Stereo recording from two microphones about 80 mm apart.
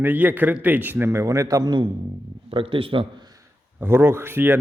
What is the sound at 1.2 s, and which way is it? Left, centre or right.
Speech, right.